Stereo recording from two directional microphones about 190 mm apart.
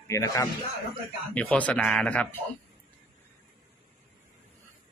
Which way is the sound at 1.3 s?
5° left (ahead or behind).